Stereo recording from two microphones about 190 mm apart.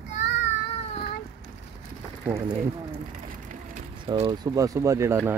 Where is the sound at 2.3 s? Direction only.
15° right (ahead or behind).